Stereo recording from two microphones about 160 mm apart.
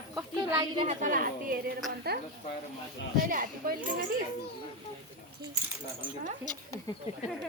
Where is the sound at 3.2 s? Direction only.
60° right (ahead or behind).